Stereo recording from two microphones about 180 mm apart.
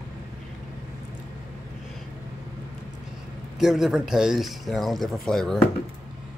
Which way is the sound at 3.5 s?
Centre (ahead or behind).